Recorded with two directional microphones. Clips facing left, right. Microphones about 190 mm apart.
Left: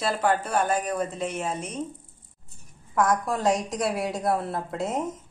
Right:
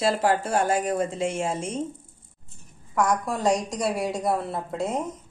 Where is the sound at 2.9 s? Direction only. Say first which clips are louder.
Even; centre (ahead or behind).